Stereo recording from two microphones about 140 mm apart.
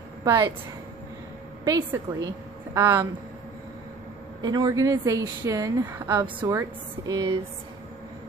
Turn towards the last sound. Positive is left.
turn(degrees=-25)  # may be behind; listen again after turning